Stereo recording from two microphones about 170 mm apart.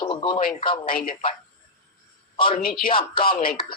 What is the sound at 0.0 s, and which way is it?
Radio, 25° left (ahead or behind).